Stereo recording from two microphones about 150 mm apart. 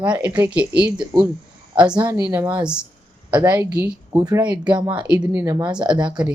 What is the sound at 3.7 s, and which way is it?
Speech, 25° right (ahead or behind).